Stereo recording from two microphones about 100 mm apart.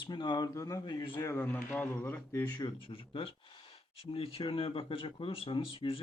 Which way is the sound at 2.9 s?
65° left (ahead or behind).